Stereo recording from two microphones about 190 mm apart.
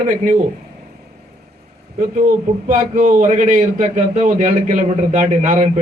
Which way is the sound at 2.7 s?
45° right (ahead or behind).